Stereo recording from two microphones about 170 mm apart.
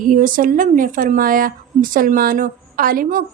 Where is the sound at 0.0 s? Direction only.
55° right (ahead or behind).